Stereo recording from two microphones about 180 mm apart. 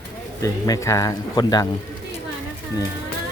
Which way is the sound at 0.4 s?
15° left (ahead or behind).